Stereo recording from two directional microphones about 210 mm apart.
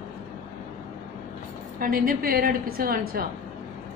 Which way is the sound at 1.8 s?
40° right (ahead or behind).